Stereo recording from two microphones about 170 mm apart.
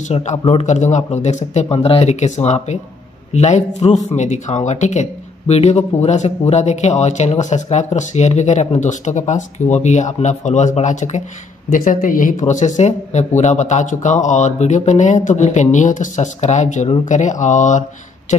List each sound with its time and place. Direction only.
0.1 s speech: 40° left (ahead or behind)